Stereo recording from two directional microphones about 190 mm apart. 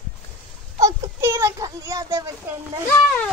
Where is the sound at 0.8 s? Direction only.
15° right (ahead or behind).